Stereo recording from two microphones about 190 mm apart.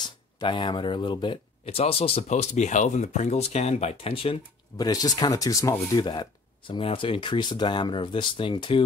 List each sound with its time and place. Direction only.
0.4 s speech: 25° left (ahead or behind)